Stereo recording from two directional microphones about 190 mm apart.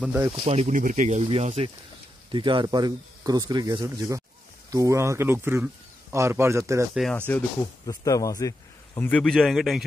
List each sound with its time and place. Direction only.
0.5 s speech: 35° right (ahead or behind); by 6.9 s 15° right (ahead or behind)
6.9 s speech: centre (ahead or behind)
7.8 s a man's voice: 20° left (ahead or behind); by 9.8 s centre (ahead or behind)